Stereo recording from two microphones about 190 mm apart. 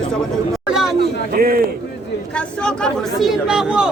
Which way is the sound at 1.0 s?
50° right (ahead or behind).